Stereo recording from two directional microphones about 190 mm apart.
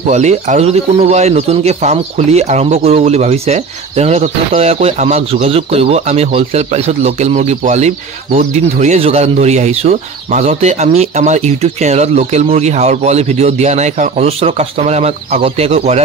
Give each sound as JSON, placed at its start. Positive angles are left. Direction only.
{"t": 0.1, "sound": "speech", "side_deg": -35}